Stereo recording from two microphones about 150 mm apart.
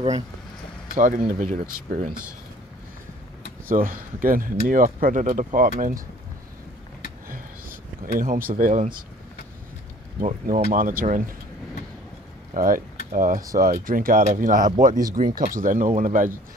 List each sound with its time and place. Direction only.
0.9 s speech: 65° right (ahead or behind)
3.7 s speech: 65° right (ahead or behind)
8.2 s speech: 70° right (ahead or behind)
10.2 s speech: 55° right (ahead or behind)
12.5 s speech: 65° right (ahead or behind)